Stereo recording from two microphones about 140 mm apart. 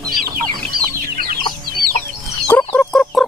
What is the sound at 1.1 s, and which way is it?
Chicken, 90° right.